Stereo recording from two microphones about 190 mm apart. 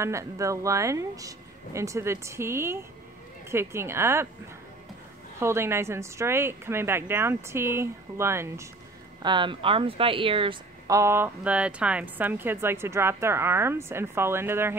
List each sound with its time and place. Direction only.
0.0 s a woman's voice: 15° right (ahead or behind)
5.4 s a woman's voice: 15° right (ahead or behind)
9.2 s a woman's voice: 25° right (ahead or behind)